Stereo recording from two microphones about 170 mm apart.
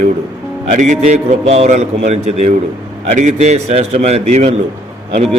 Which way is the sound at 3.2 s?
45° right (ahead or behind).